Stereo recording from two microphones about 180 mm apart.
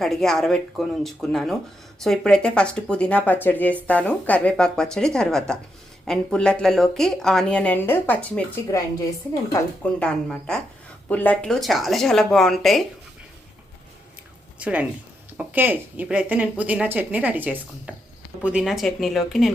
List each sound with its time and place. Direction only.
0.0 s a woman's voice: centre (ahead or behind); by 8.9 s 20° left (ahead or behind)
9.8 s speech: 5° left (ahead or behind)
14.6 s speech: 5° right (ahead or behind)